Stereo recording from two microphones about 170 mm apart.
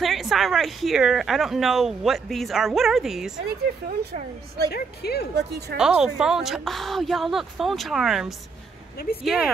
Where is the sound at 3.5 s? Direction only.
60° right (ahead or behind).